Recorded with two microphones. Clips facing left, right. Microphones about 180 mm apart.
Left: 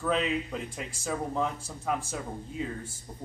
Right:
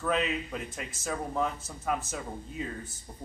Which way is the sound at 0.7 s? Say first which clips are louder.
Left 1 dB; 30° left (ahead or behind).